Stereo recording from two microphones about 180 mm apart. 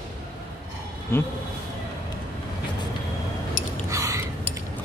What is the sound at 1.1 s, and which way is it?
Speech, 15° left (ahead or behind).